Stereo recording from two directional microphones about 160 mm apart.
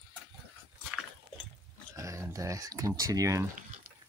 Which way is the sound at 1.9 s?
20° right (ahead or behind).